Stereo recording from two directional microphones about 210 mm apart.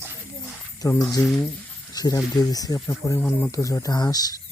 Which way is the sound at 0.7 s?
15° left (ahead or behind).